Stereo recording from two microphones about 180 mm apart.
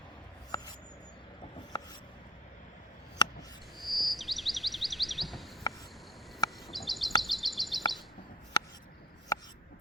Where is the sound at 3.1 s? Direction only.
20° left (ahead or behind).